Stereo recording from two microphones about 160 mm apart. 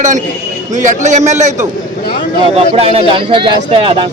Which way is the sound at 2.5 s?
40° right (ahead or behind).